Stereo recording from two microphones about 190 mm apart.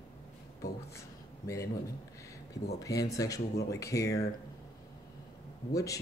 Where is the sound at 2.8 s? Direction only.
15° left (ahead or behind).